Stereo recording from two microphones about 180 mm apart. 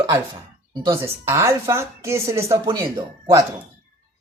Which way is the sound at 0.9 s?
15° right (ahead or behind).